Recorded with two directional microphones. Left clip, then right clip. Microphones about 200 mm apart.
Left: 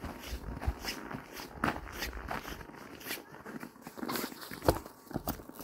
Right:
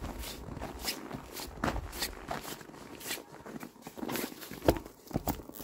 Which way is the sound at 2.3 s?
20° right (ahead or behind).